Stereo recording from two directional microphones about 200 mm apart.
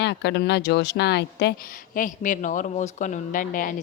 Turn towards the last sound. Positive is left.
turn(degrees=45)  # may be behind; listen again after turning